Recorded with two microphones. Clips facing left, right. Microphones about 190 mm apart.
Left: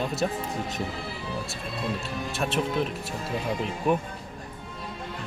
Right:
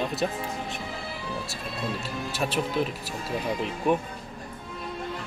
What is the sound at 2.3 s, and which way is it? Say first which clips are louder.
Speech: even; centre (ahead or behind).